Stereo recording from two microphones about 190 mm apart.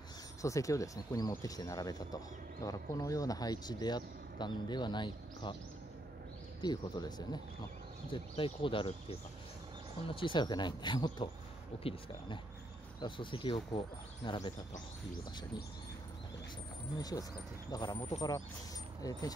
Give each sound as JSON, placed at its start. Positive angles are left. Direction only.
{"t": 0.4, "sound": "speech", "side_deg": 15}
{"t": 6.6, "sound": "speech", "side_deg": 20}
{"t": 17.0, "sound": "speech", "side_deg": 20}
{"t": 19.0, "sound": "speech", "side_deg": 20}